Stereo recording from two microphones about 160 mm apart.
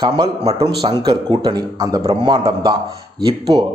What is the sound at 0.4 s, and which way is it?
Speech, 30° right (ahead or behind).